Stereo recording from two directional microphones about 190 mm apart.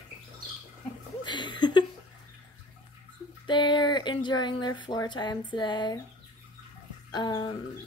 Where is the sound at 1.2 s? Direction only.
25° left (ahead or behind).